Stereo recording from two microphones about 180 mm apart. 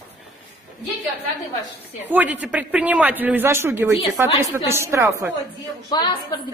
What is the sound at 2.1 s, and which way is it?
Speech, 10° right (ahead or behind).